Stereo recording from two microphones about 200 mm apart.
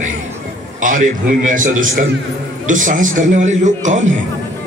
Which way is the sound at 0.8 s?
40° right (ahead or behind).